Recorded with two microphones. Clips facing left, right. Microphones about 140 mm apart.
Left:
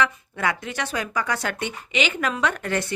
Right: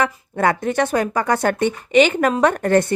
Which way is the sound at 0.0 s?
45° right (ahead or behind).